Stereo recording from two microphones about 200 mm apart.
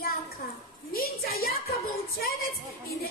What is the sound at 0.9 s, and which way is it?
A woman's voice, 50° left (ahead or behind).